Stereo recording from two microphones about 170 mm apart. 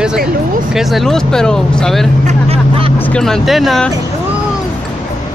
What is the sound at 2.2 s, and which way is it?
Vehicle, 35° right (ahead or behind).